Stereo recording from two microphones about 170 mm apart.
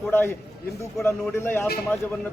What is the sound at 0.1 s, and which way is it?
A man's voice, 10° left (ahead or behind).